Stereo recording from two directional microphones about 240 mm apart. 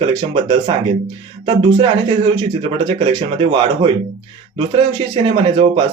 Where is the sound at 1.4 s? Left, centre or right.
Right.